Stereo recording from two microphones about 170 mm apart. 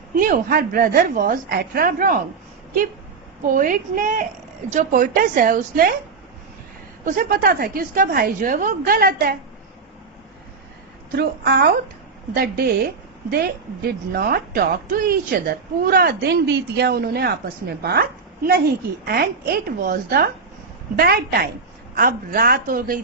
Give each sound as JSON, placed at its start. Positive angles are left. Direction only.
{"t": 0.2, "sound": "a woman's voice", "side_deg": -55}
{"t": 3.4, "sound": "a woman's voice", "side_deg": -50}
{"t": 7.0, "sound": "a woman's voice", "side_deg": -55}
{"t": 11.1, "sound": "a woman's voice", "side_deg": -70}